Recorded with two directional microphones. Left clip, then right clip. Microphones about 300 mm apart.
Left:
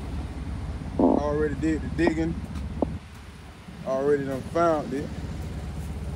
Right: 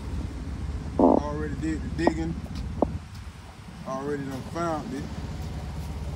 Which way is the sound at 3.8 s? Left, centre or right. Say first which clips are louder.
Left 8 dB; centre.